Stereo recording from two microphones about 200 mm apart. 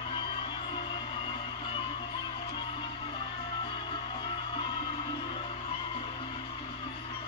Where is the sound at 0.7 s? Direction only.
25° left (ahead or behind).